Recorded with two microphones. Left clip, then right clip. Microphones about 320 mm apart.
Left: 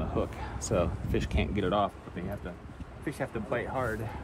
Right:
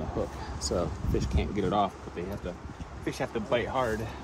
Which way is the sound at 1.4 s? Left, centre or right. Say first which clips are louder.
Right 1 dB; centre.